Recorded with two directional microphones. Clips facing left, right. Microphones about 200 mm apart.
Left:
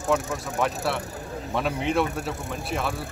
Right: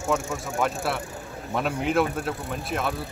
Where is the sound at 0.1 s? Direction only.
Centre (ahead or behind).